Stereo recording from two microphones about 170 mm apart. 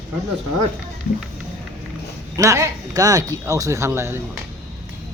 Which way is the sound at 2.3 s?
20° right (ahead or behind).